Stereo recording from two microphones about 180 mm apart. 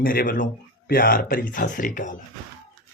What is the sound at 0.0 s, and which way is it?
Speech, 55° left (ahead or behind).